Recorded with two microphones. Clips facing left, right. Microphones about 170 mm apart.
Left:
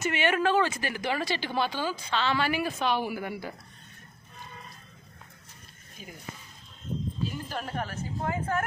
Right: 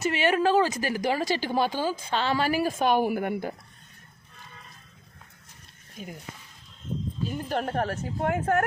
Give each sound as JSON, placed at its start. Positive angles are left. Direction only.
{"t": 0.0, "sound": "a woman's voice", "side_deg": -35}
{"t": 6.0, "sound": "a woman's voice", "side_deg": -60}
{"t": 7.5, "sound": "a woman's voice", "side_deg": -60}